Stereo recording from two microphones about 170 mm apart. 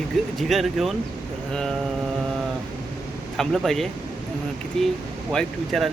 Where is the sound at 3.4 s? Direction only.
Centre (ahead or behind).